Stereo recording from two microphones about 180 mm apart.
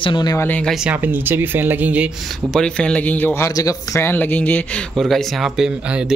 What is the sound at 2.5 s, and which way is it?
Speech, 5° left (ahead or behind).